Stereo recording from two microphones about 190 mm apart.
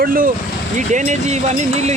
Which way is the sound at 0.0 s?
50° right (ahead or behind).